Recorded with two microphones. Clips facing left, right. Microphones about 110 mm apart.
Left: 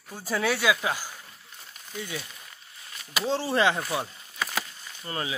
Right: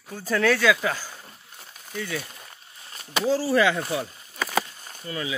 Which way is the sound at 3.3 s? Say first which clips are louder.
Right 3 dB; 25° left (ahead or behind).